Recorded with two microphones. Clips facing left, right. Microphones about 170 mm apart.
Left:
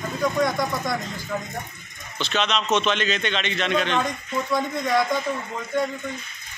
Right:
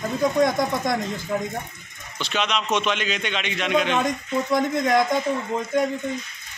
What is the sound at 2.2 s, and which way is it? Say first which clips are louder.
A man's voice: left 1 dB; 10° right (ahead or behind).